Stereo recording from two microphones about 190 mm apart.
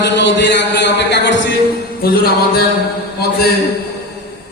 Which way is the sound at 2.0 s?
55° left (ahead or behind).